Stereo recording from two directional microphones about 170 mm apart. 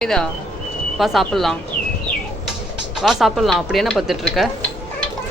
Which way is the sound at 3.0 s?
Centre (ahead or behind).